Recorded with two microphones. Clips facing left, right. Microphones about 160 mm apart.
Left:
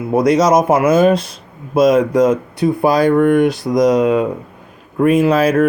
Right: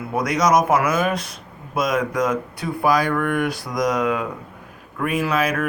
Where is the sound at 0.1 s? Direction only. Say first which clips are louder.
Left 7 dB; 25° left (ahead or behind).